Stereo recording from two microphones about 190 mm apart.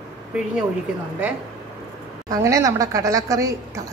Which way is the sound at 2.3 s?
15° right (ahead or behind).